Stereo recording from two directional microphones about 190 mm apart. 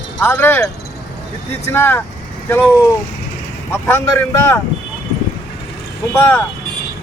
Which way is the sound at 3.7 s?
10° left (ahead or behind).